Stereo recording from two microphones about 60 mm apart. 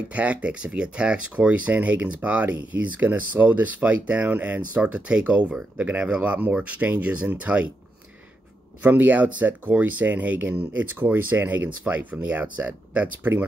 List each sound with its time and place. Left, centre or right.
0.1 s speech: right
8.8 s speech: right